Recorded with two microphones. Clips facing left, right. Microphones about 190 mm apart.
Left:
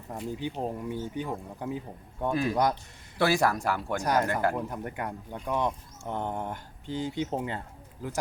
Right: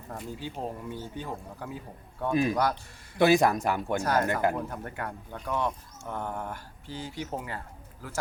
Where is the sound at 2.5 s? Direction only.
20° left (ahead or behind).